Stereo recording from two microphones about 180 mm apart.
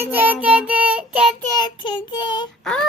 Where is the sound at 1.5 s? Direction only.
25° left (ahead or behind).